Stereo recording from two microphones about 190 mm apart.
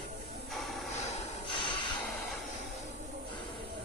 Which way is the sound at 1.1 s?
25° left (ahead or behind).